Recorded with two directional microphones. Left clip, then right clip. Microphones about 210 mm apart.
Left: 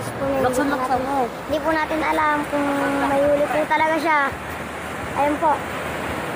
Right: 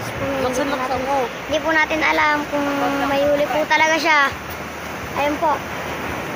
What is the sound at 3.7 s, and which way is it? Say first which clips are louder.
Speech: right 5 dB; 5° left (ahead or behind).